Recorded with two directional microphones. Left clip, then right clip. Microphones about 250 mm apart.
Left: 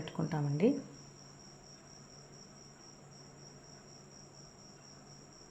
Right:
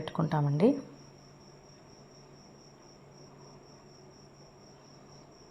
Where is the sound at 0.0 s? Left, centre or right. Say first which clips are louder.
Right 6 dB; centre.